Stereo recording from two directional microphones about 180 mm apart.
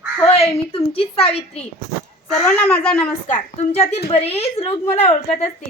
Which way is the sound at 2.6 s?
10° left (ahead or behind).